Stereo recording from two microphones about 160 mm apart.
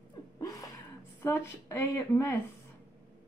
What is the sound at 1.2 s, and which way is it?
A woman's voice, 15° left (ahead or behind).